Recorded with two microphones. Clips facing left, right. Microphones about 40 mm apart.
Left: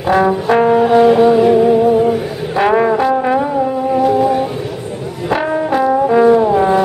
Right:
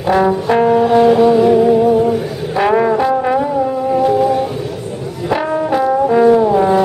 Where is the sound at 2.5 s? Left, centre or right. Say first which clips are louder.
Left 1 dB; centre.